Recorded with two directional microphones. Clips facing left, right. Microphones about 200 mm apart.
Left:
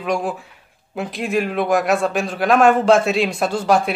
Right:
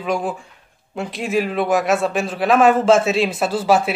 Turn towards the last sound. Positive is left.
turn(degrees=-5)  # may be behind; listen again after turning